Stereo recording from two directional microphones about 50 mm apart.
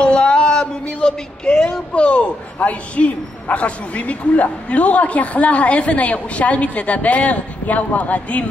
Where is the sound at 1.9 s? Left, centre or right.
Left.